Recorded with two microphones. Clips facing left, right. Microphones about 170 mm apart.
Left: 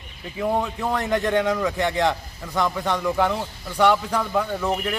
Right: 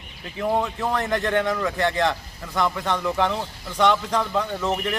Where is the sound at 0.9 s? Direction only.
15° left (ahead or behind).